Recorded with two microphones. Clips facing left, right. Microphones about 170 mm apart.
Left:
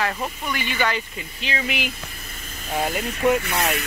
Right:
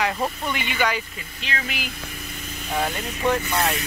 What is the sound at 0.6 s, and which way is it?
Speech, 10° right (ahead or behind).